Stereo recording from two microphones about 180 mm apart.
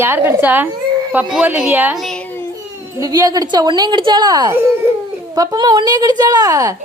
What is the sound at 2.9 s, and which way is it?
Speech, 20° right (ahead or behind).